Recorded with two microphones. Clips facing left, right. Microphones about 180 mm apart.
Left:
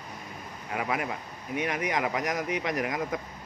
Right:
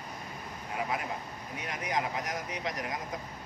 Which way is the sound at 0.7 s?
75° left (ahead or behind).